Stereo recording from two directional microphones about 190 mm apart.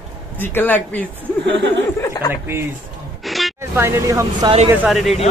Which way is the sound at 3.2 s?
Centre (ahead or behind).